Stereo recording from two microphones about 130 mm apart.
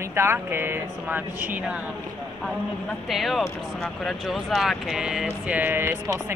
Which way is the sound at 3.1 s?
Centre (ahead or behind).